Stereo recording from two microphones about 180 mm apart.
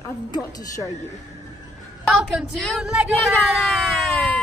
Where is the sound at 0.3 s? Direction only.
20° left (ahead or behind).